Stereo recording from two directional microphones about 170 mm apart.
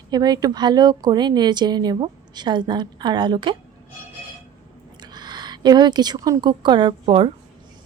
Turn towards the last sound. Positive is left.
turn(degrees=-30)  # may be behind; listen again after turning